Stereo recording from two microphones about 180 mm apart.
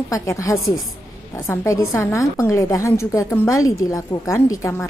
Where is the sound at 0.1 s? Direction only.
15° left (ahead or behind).